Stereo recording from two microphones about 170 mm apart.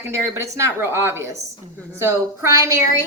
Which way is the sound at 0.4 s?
15° right (ahead or behind).